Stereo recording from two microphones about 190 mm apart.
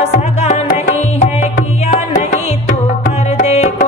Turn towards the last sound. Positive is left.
turn(degrees=35)  # may be behind; listen again after turning